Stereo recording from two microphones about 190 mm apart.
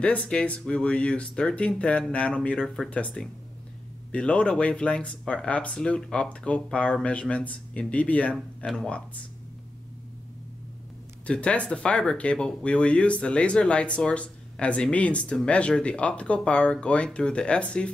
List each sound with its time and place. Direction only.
0.0 s speech: 5° left (ahead or behind)
11.2 s speech: 5° left (ahead or behind)